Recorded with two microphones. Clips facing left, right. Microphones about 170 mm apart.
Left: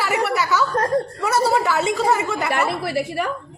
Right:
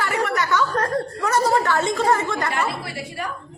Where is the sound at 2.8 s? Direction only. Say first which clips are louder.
Left 8 dB; 75° left (ahead or behind).